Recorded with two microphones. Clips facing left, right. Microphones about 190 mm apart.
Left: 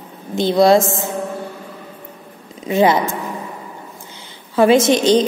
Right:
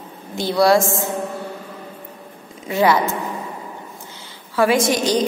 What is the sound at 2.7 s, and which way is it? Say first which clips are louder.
Speech: left 2 dB; 20° left (ahead or behind).